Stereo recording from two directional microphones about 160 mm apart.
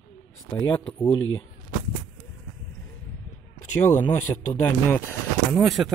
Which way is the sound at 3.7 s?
15° left (ahead or behind).